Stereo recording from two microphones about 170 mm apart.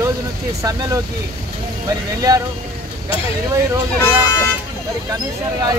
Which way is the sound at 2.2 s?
20° right (ahead or behind).